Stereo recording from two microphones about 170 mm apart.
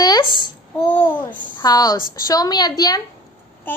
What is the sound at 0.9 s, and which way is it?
Babbling, 10° left (ahead or behind).